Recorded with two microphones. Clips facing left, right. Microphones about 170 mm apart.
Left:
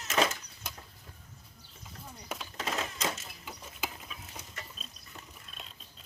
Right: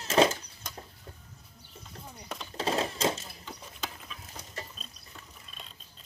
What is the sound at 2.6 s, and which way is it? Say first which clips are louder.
Typewriter: right 7 dB; 30° right (ahead or behind).